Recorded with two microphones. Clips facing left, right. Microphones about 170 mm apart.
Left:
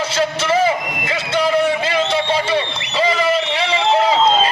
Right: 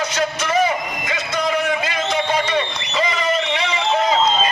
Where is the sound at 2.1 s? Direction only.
30° left (ahead or behind).